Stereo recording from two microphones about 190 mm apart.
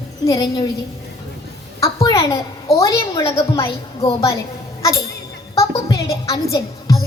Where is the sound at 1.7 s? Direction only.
15° left (ahead or behind).